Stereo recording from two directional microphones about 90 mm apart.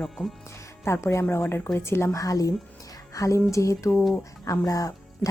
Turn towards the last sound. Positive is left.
turn(degrees=40)  # may be behind; listen again after turning